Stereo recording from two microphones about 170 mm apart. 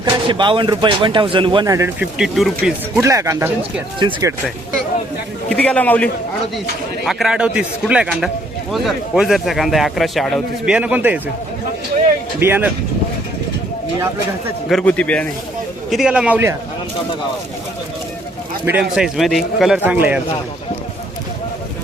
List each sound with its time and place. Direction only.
0.0 s speech: 25° right (ahead or behind)
2.0 s speech: 5° right (ahead or behind)
3.0 s a man's voice: 20° right (ahead or behind)
5.5 s a man's voice: 5° left (ahead or behind)
12.4 s a man's voice: 10° right (ahead or behind)
14.7 s a man's voice: 5° left (ahead or behind)
15.9 s a man's voice: 5° right (ahead or behind)
18.6 s speech: 5° right (ahead or behind)